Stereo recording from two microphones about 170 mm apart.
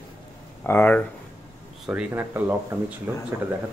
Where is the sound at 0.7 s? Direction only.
10° left (ahead or behind).